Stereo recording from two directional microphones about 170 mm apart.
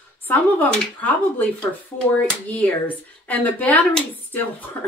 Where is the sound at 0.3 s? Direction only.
10° left (ahead or behind).